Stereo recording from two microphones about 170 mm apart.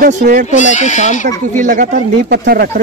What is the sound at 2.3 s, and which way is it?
Speech, 70° right (ahead or behind).